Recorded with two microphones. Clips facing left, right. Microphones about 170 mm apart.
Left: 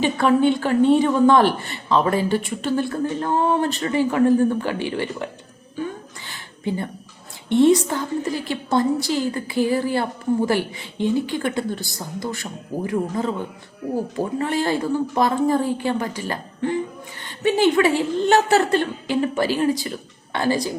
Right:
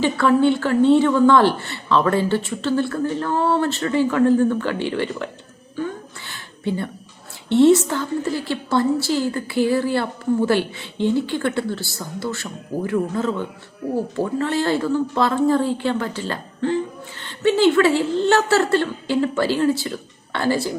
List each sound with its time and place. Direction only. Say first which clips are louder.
0.0 s a woman's voice: right 1 dB; 20° left (ahead or behind)
6.2 s a sound: right 1 dB; 15° left (ahead or behind)
7.5 s a woman's voice: right 2 dB; 15° left (ahead or behind)
14.3 s a woman's voice: right 1 dB; 15° left (ahead or behind)